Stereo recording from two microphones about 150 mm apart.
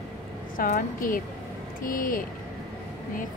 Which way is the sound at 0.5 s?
65° left (ahead or behind).